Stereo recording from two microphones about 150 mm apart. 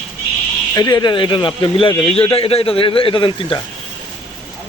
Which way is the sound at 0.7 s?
25° left (ahead or behind).